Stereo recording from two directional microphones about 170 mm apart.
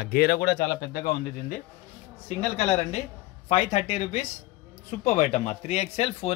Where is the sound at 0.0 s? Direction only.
65° left (ahead or behind).